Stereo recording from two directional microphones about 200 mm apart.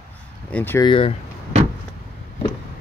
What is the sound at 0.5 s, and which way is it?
Speech, 10° left (ahead or behind).